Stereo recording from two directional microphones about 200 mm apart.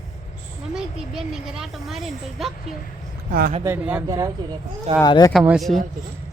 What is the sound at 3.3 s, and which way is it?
Speech, 45° right (ahead or behind).